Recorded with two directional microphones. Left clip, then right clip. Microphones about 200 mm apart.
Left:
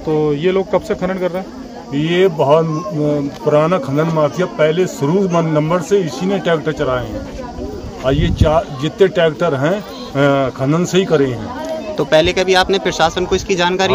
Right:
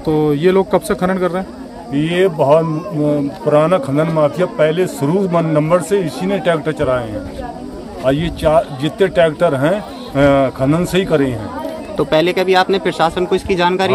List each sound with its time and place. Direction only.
0.1 s speech: 50° right (ahead or behind)
2.0 s a man's voice: 5° right (ahead or behind)